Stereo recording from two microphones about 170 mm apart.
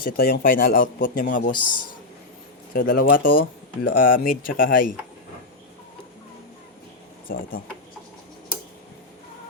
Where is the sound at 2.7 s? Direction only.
55° left (ahead or behind).